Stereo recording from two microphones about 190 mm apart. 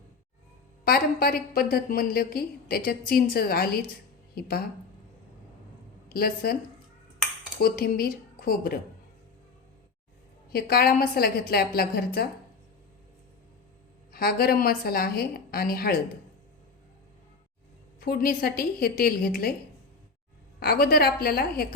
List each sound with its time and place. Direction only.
0.9 s a woman's voice: 55° left (ahead or behind)
6.1 s a woman's voice: 55° left (ahead or behind)
7.6 s a woman's voice: 50° left (ahead or behind)
10.5 s a woman's voice: 55° left (ahead or behind)
14.1 s a woman's voice: 55° left (ahead or behind)
18.0 s a woman's voice: 50° left (ahead or behind)
20.6 s a woman's voice: 50° left (ahead or behind)